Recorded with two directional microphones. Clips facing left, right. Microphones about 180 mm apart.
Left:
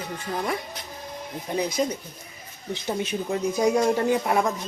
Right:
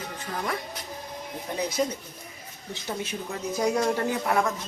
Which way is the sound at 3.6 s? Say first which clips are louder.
Left 3 dB; 15° left (ahead or behind).